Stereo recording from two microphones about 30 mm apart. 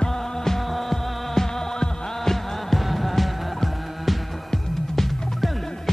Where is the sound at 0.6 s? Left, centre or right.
Centre.